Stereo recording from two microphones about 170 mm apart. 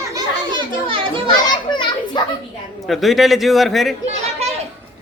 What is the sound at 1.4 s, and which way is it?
Children playing, 25° left (ahead or behind).